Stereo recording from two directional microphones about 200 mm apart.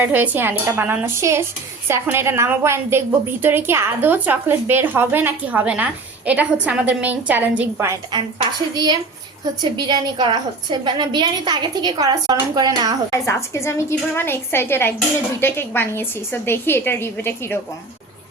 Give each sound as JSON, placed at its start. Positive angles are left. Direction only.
{"t": 0.0, "sound": "a woman's voice", "side_deg": -10}
{"t": 13.1, "sound": "a woman's voice", "side_deg": 15}